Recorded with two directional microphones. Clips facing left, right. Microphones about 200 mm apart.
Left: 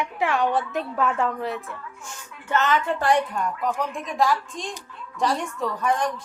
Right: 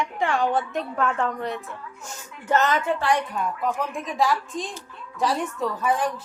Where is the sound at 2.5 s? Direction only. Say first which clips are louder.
Right 1 dB; 40° right (ahead or behind).